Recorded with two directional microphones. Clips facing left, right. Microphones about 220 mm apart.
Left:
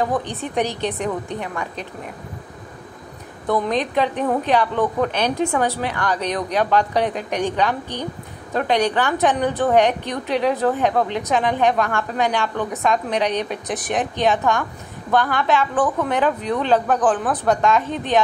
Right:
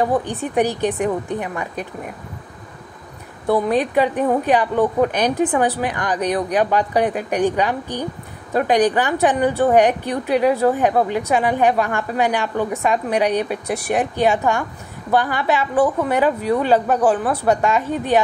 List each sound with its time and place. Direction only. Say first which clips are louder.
0.0 s a woman's voice: right 3 dB; 10° right (ahead or behind)
3.4 s a woman's voice: right 3 dB; 10° right (ahead or behind)